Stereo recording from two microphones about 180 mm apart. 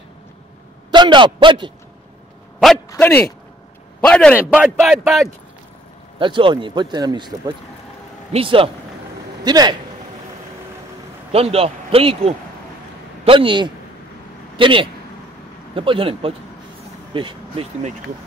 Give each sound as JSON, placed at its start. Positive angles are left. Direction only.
{"t": 0.9, "sound": "a man's voice", "side_deg": -25}
{"t": 2.9, "sound": "speech", "side_deg": 10}
{"t": 4.4, "sound": "speech", "side_deg": -5}
{"t": 6.1, "sound": "a man's voice", "side_deg": -30}
{"t": 11.3, "sound": "a man's voice", "side_deg": -35}